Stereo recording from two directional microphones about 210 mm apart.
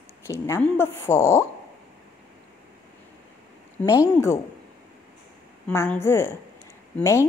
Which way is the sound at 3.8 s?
10° left (ahead or behind).